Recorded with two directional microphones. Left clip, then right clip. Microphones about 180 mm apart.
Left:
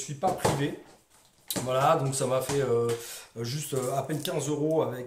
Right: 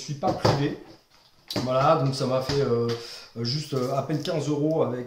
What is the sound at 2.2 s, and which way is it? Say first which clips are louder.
A man's voice: right 2 dB; 15° left (ahead or behind).